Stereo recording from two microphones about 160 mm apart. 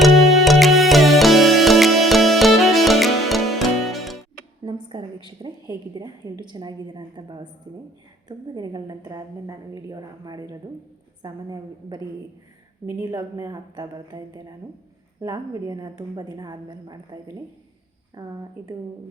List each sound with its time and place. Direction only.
0.0 s music: centre (ahead or behind)
4.6 s a sound: 30° right (ahead or behind)
5.4 s a woman's voice: 25° right (ahead or behind)